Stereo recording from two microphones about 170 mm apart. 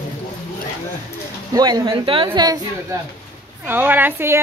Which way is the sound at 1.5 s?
25° right (ahead or behind).